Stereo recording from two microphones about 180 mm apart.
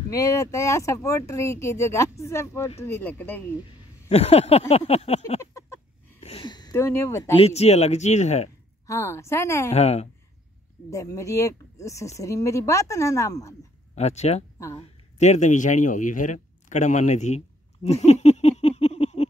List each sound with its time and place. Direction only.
0.1 s speech: 20° left (ahead or behind)
4.1 s speech: 35° left (ahead or behind)
5.4 s a sound: 15° left (ahead or behind)
6.2 s a sound: 30° left (ahead or behind)
7.3 s speech: 35° left (ahead or behind)
8.8 s speech: 15° left (ahead or behind)
9.7 s speech: 35° left (ahead or behind)
10.9 s speech: 15° left (ahead or behind)
13.9 s speech: 40° left (ahead or behind)
17.8 s a sound: 35° left (ahead or behind)